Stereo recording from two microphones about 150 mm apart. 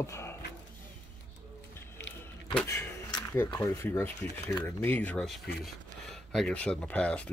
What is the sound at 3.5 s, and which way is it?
Speech, 15° left (ahead or behind).